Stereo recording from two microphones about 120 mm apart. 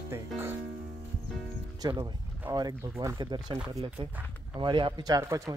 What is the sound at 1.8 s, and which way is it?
Speech, 35° right (ahead or behind).